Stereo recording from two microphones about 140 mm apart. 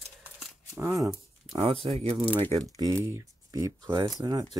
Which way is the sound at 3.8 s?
35° right (ahead or behind).